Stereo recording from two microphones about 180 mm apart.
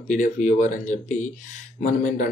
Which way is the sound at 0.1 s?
45° left (ahead or behind).